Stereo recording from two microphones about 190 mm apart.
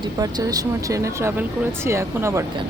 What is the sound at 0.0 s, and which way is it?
Speech, 20° right (ahead or behind).